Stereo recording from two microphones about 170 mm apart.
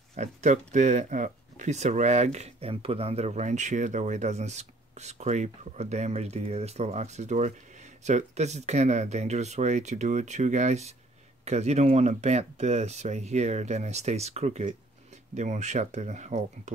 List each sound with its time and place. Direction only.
0.1 s speech: 45° right (ahead or behind)